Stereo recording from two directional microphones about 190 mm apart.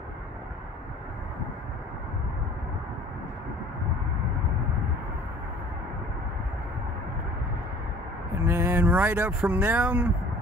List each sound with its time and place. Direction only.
8.4 s speech: 10° right (ahead or behind)